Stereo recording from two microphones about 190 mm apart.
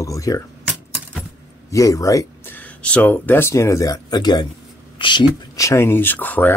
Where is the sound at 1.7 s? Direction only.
15° left (ahead or behind).